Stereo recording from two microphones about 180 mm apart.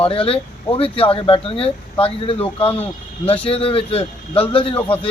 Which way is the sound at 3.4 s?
30° left (ahead or behind).